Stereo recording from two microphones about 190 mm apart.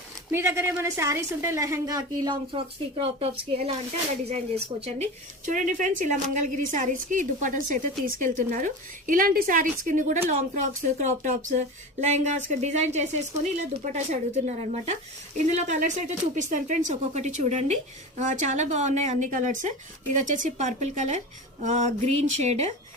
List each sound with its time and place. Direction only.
0.3 s a woman's voice: 10° right (ahead or behind); by 22.7 s 35° right (ahead or behind)